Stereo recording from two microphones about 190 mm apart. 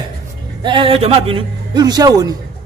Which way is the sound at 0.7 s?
25° right (ahead or behind).